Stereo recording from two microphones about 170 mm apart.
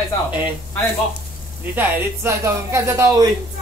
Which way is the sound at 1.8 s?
15° right (ahead or behind).